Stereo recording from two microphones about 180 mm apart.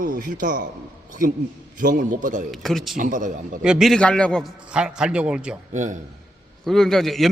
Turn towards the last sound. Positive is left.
turn(degrees=0)  # may be behind; listen again after turning